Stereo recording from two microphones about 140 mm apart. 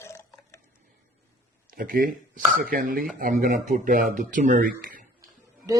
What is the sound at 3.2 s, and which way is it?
Speech, 65° right (ahead or behind).